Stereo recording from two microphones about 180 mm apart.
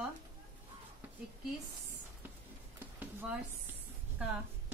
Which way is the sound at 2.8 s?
10° right (ahead or behind).